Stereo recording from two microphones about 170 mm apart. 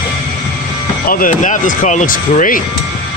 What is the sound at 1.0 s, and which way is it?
Speech, 55° left (ahead or behind).